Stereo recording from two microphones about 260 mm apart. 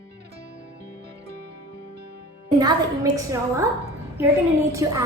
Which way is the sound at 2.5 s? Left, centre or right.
Centre.